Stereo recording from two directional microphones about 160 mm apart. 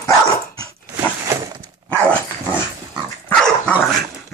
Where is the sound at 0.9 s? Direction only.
20° right (ahead or behind).